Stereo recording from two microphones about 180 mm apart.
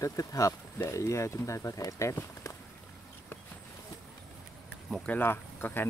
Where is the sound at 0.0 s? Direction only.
20° left (ahead or behind).